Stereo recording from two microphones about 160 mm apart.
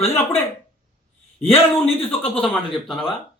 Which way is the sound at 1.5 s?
40° left (ahead or behind).